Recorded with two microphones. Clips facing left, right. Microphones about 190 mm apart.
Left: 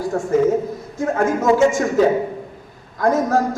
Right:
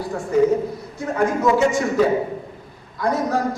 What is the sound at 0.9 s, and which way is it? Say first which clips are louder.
Speech: left 2 dB; 45° left (ahead or behind).